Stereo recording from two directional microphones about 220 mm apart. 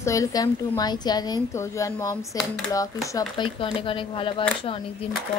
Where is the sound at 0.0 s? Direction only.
15° left (ahead or behind).